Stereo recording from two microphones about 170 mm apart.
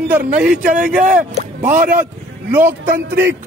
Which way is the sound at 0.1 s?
5° right (ahead or behind).